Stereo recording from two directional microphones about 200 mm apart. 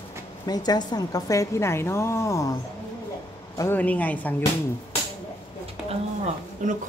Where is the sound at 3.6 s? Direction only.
10° left (ahead or behind).